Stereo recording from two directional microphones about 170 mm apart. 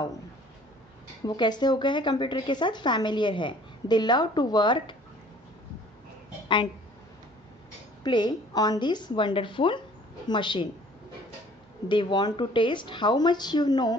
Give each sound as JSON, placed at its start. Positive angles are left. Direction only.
{"t": 1.2, "sound": "speech", "side_deg": 25}
{"t": 8.0, "sound": "a woman's voice", "side_deg": 25}
{"t": 11.9, "sound": "speech", "side_deg": 25}